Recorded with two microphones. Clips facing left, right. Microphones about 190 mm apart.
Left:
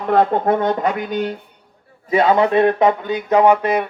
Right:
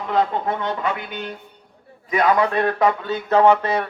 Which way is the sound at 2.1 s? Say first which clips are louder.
Left 4 dB; 25° left (ahead or behind).